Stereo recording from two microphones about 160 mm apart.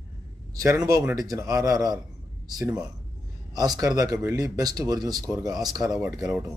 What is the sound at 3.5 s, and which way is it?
Speech, 25° right (ahead or behind).